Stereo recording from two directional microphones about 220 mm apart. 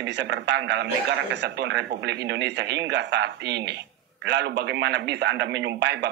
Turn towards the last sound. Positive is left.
turn(degrees=-50)  # may be behind; listen again after turning